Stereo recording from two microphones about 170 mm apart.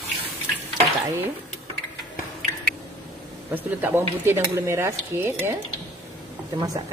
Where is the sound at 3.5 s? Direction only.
10° right (ahead or behind).